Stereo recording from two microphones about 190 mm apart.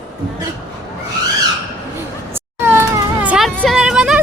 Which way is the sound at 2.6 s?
10° right (ahead or behind).